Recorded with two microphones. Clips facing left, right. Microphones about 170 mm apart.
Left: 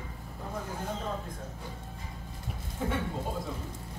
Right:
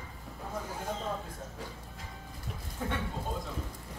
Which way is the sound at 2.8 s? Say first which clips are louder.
Left 3 dB; 5° left (ahead or behind).